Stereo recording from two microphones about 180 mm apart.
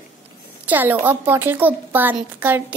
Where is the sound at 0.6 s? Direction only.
10° right (ahead or behind).